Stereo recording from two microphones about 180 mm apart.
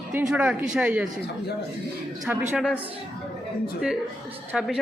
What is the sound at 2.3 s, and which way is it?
Speech, 10° right (ahead or behind).